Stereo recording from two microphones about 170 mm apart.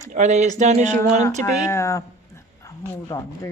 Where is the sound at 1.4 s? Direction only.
15° left (ahead or behind).